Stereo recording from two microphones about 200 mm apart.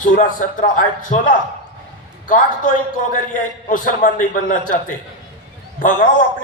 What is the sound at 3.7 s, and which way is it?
A man's voice, 40° left (ahead or behind).